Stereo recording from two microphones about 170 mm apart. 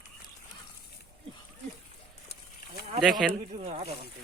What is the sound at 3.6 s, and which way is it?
Speech, 40° right (ahead or behind).